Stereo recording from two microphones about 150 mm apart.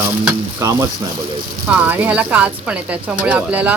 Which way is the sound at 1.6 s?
10° right (ahead or behind).